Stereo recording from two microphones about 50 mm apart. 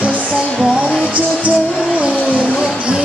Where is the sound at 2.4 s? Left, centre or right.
Centre.